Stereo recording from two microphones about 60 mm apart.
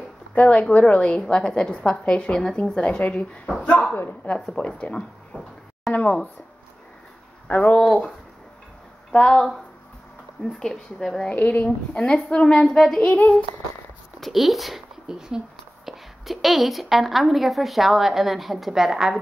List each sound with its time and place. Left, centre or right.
0.3 s a woman's voice: left
3.9 s speech: left
7.4 s speech: left
7.7 s speech: centre
9.1 s a woman's voice: centre
11.2 s speech: left
12.0 s a woman's voice: centre
12.6 s speech: centre
13.0 s speech: left
14.2 s speech: centre